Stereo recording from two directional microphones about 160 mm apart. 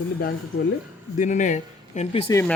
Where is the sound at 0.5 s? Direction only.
90° left.